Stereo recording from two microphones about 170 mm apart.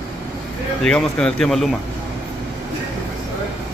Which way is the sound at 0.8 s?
5° left (ahead or behind).